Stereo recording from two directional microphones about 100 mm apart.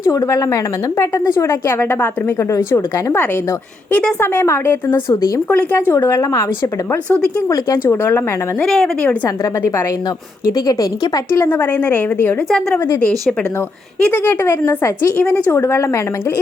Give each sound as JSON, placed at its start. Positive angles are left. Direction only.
{"t": 0.0, "sound": "speech", "side_deg": 35}
{"t": 7.5, "sound": "speech", "side_deg": 35}
{"t": 8.6, "sound": "a woman's voice", "side_deg": 5}
{"t": 9.4, "sound": "speech", "side_deg": 30}
{"t": 11.4, "sound": "speech", "side_deg": 20}
{"t": 12.5, "sound": "a woman's voice", "side_deg": 5}
{"t": 14.0, "sound": "speech", "side_deg": 20}